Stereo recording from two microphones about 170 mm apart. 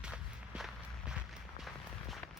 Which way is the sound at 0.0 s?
5° right (ahead or behind).